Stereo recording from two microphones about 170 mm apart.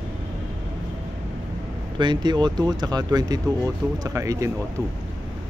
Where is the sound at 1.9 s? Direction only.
25° right (ahead or behind).